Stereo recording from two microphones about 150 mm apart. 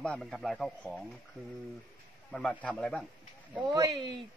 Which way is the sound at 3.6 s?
30° right (ahead or behind).